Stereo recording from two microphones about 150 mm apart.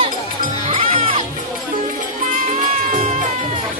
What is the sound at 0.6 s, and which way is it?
Music, 40° right (ahead or behind).